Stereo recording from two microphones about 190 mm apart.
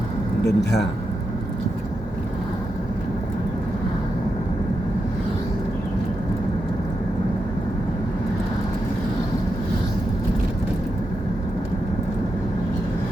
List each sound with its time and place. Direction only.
0.4 s a man's voice: 65° left (ahead or behind)